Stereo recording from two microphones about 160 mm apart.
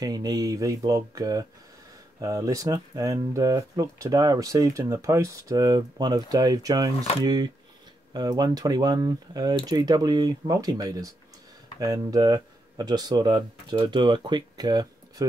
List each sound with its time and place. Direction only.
0.0 s speech: 25° right (ahead or behind)